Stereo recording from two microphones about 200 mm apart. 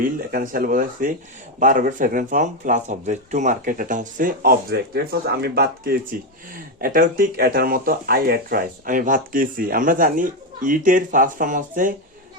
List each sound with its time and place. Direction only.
0.0 s speech: 45° right (ahead or behind)